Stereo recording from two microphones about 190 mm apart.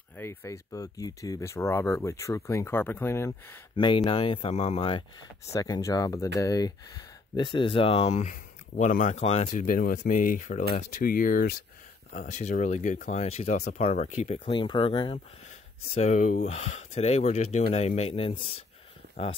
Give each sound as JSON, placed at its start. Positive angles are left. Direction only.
{"t": 0.2, "sound": "speech", "side_deg": 15}
{"t": 3.7, "sound": "speech", "side_deg": 25}
{"t": 5.5, "sound": "speech", "side_deg": 20}
{"t": 15.9, "sound": "speech", "side_deg": 35}